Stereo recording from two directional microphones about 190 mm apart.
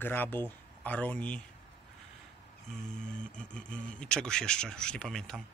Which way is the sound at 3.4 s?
5° left (ahead or behind).